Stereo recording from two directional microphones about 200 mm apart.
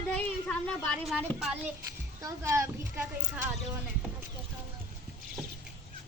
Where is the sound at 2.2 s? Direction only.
15° right (ahead or behind).